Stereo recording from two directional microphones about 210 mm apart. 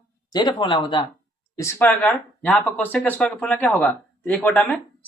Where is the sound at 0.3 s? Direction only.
20° left (ahead or behind).